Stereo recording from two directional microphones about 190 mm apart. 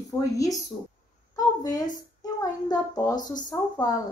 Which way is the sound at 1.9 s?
20° left (ahead or behind).